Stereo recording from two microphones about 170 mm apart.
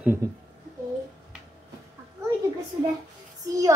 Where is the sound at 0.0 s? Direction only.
15° right (ahead or behind).